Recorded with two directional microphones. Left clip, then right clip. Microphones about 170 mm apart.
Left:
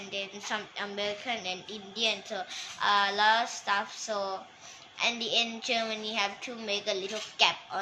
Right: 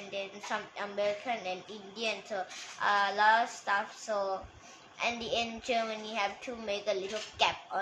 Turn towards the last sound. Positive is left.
turn(degrees=-15)  # may be behind; listen again after turning